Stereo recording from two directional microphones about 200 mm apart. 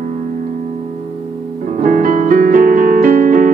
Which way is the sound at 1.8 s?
40° right (ahead or behind).